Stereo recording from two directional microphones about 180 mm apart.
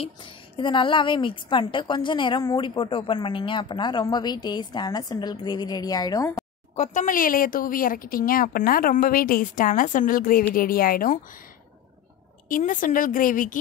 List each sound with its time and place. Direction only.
0.6 s speech: 25° left (ahead or behind)
6.7 s speech: 40° left (ahead or behind)
12.4 s speech: 50° left (ahead or behind)